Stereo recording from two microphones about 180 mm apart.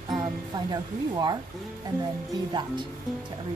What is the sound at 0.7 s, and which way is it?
Speech, 25° right (ahead or behind).